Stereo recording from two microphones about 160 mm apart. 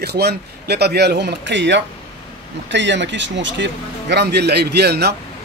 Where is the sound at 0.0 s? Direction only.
90° right.